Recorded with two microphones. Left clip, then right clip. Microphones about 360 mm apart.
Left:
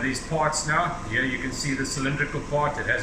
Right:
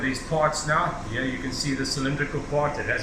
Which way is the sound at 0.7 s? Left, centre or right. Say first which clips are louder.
Even; centre.